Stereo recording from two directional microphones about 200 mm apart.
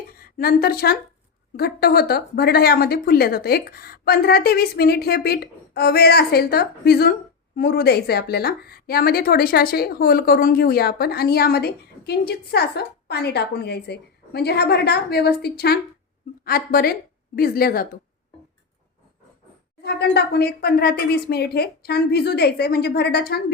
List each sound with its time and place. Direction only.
0.1 s a woman's voice: 50° left (ahead or behind)
19.8 s a woman's voice: 55° left (ahead or behind)